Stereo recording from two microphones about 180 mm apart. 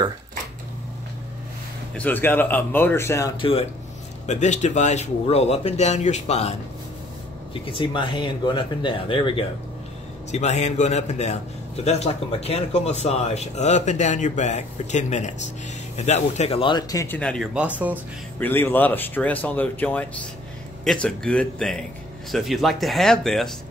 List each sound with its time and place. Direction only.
2.0 s speech: 10° left (ahead or behind)
3.3 s a man's voice: 30° left (ahead or behind)
7.5 s speech: 30° left (ahead or behind)
10.3 s a man's voice: 40° left (ahead or behind); by 17.2 s 20° left (ahead or behind)
17.2 s speech: 5° left (ahead or behind)
17.6 s speech: 10° right (ahead or behind)
18.4 s speech: 10° left (ahead or behind)